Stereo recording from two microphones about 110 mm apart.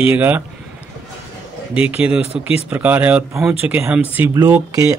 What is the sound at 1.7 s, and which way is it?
A man's voice, 10° right (ahead or behind).